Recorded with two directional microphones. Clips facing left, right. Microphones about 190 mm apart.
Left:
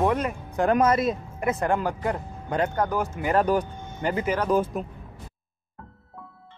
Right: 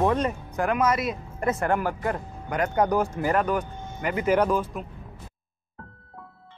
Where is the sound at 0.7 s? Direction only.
30° left (ahead or behind).